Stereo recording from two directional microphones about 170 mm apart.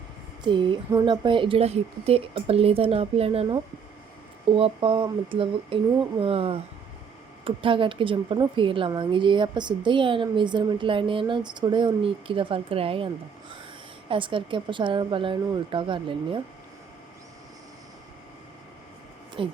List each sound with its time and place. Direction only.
0.4 s a woman's voice: 25° right (ahead or behind)
14.1 s a woman's voice: 30° right (ahead or behind)
19.4 s speech: 30° right (ahead or behind)